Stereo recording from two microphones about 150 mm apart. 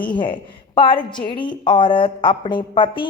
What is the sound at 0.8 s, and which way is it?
A woman's voice, 35° left (ahead or behind).